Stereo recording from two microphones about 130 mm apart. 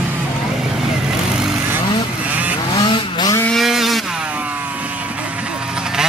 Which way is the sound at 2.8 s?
35° left (ahead or behind).